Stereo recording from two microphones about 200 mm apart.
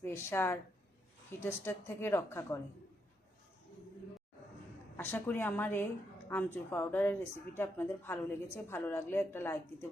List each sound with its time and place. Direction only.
0.0 s speech: 10° left (ahead or behind)
4.9 s speech: 10° left (ahead or behind)